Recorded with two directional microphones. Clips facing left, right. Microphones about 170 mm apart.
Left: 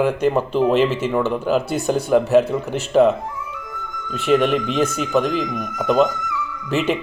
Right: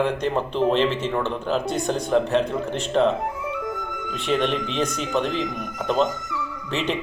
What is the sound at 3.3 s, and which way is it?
Music, 75° right (ahead or behind).